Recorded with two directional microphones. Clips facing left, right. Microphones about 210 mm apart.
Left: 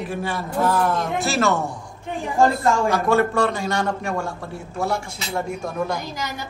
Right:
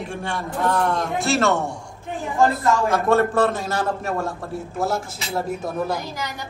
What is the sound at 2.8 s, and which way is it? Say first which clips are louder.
A woman's voice: even; centre (ahead or behind).